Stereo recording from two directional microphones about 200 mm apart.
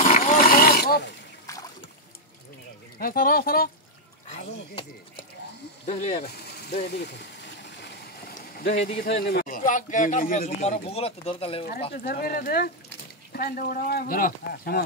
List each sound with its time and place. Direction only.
0.0 s a sound: 40° left (ahead or behind)
3.0 s speech: 45° left (ahead or behind)
5.9 s speech: 35° left (ahead or behind)
6.2 s speech: 55° left (ahead or behind)
7.8 s a sound: 55° left (ahead or behind)
8.7 s speech: 45° left (ahead or behind); by 11.6 s 30° left (ahead or behind)
11.9 s speech: 50° left (ahead or behind)